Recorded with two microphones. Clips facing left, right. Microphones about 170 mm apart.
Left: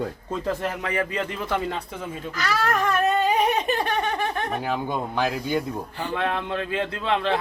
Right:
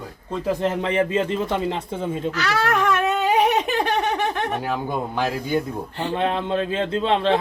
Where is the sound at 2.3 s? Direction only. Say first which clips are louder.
Left 1 dB; 75° right (ahead or behind).